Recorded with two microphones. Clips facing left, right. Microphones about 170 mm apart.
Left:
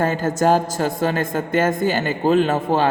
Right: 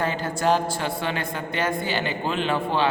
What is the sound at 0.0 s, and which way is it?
A woman's voice, 45° left (ahead or behind).